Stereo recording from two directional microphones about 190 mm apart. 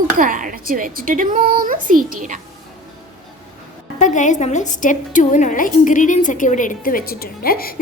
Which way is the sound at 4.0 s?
40° left (ahead or behind).